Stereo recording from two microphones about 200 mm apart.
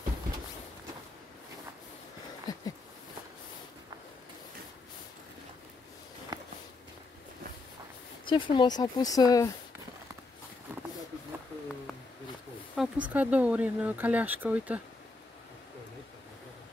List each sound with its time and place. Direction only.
2.5 s a sound: 20° left (ahead or behind)
6.3 s walk: 20° right (ahead or behind)
8.3 s speech: 25° left (ahead or behind)
12.7 s speech: 5° right (ahead or behind)